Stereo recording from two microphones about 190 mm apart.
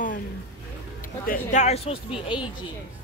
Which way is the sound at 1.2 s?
45° left (ahead or behind).